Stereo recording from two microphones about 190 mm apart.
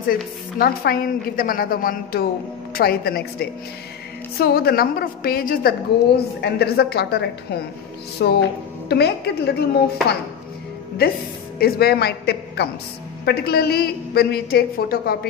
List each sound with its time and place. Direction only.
0.1 s a woman's voice: 50° left (ahead or behind)
11.5 s a woman's voice: 55° left (ahead or behind)